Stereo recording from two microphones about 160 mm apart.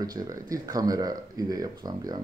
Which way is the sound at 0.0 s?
25° right (ahead or behind).